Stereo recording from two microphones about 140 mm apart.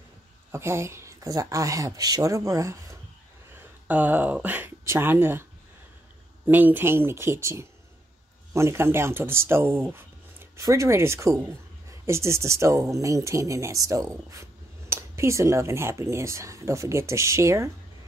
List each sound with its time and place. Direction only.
0.5 s speech: 20° right (ahead or behind)
3.8 s speech: 10° right (ahead or behind)
6.4 s speech: 15° right (ahead or behind)